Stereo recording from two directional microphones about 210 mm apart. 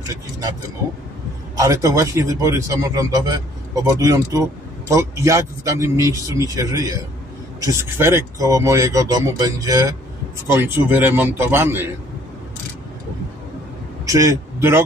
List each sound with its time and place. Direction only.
1.6 s a man's voice: 15° right (ahead or behind)
14.0 s a man's voice: 15° right (ahead or behind)